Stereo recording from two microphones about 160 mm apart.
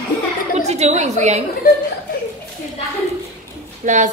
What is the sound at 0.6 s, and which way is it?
Speech, 45° right (ahead or behind).